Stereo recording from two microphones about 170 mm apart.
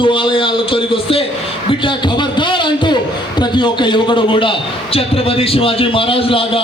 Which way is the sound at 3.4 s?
25° left (ahead or behind).